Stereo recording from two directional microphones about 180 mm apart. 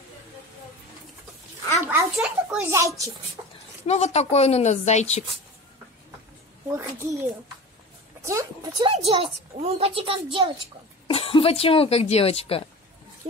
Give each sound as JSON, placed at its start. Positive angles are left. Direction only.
{"t": 1.8, "sound": "a sound", "side_deg": -15}
{"t": 2.1, "sound": "a child's voice", "side_deg": -10}
{"t": 3.4, "sound": "a sound", "side_deg": -20}
{"t": 3.8, "sound": "speech", "side_deg": 35}
{"t": 6.7, "sound": "speech", "side_deg": -15}
{"t": 8.3, "sound": "speech", "side_deg": -15}
{"t": 8.8, "sound": "a child's voice", "side_deg": -30}
{"t": 11.1, "sound": "speech", "side_deg": 30}